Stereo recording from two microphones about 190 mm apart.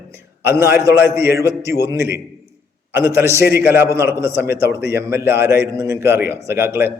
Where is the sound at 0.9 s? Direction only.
10° right (ahead or behind).